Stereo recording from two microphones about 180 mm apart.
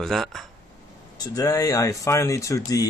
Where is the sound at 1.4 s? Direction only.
20° left (ahead or behind).